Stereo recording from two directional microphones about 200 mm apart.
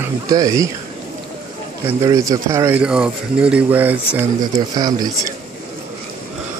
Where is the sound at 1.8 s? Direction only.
15° right (ahead or behind).